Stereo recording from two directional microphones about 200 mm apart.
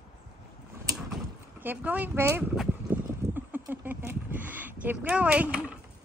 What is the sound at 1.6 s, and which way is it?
Boat, 10° right (ahead or behind).